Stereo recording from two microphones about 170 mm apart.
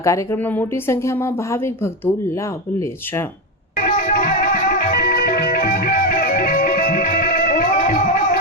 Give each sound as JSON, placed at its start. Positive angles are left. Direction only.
{"t": 0.0, "sound": "speech", "side_deg": 15}
{"t": 3.8, "sound": "music", "side_deg": 55}